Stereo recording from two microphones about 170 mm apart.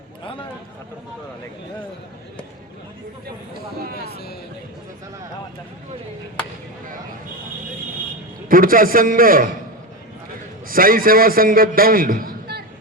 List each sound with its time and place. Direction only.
3.9 s music: 65° left (ahead or behind)
8.4 s a man's voice: 55° right (ahead or behind)
10.7 s a man's voice: 55° right (ahead or behind)